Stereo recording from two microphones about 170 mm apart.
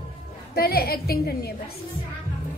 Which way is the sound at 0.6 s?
65° left (ahead or behind).